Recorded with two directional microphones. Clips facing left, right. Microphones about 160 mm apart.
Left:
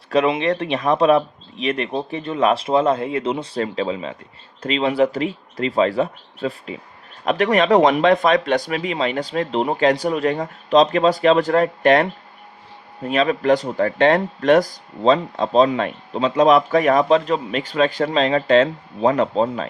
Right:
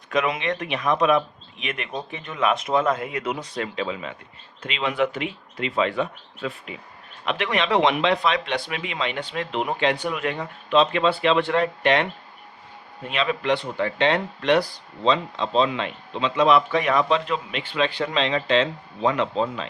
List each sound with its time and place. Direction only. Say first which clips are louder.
0.1 s speech: left 6 dB; 30° left (ahead or behind)